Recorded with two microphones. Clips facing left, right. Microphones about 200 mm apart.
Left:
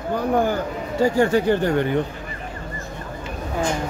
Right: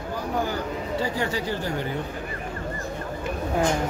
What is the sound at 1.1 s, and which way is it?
Speech, 55° left (ahead or behind).